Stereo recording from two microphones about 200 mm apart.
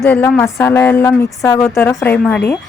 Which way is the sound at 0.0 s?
10° left (ahead or behind).